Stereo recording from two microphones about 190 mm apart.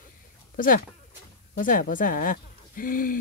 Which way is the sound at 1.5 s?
45° left (ahead or behind).